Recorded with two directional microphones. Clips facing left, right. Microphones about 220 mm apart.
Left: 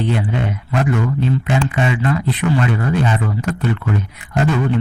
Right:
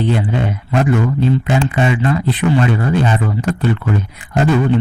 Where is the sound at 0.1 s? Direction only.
30° right (ahead or behind).